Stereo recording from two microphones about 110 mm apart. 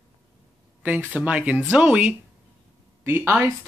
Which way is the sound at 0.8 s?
15° right (ahead or behind).